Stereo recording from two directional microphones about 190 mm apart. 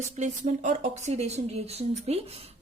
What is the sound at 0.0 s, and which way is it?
Speech, 40° right (ahead or behind).